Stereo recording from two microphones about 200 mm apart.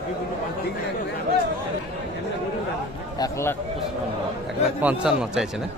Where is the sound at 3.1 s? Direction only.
15° left (ahead or behind).